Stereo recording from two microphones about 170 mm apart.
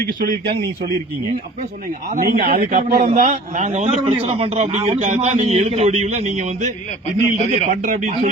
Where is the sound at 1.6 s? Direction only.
50° right (ahead or behind).